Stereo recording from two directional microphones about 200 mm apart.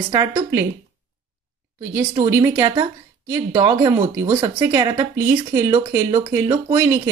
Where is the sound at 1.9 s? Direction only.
15° right (ahead or behind).